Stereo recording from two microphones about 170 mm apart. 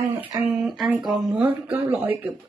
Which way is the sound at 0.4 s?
5° right (ahead or behind).